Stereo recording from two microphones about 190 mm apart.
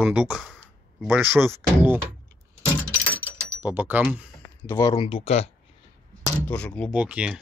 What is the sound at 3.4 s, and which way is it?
Speech, 10° right (ahead or behind).